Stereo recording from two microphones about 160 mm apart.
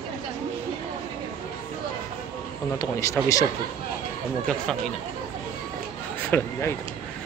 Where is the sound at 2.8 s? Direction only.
20° left (ahead or behind).